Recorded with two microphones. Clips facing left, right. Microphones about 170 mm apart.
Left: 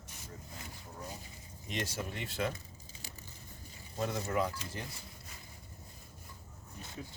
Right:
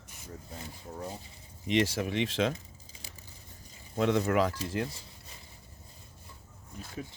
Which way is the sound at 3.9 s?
85° right.